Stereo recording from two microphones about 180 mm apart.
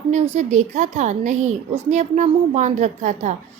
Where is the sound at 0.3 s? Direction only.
40° right (ahead or behind).